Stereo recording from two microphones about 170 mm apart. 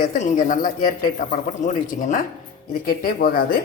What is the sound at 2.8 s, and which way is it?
Speech, 60° left (ahead or behind).